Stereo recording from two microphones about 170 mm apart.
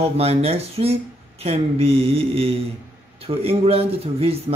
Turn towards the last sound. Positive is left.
turn(degrees=-35)  # may be behind; listen again after turning